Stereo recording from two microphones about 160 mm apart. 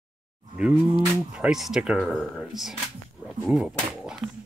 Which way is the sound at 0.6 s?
5° right (ahead or behind).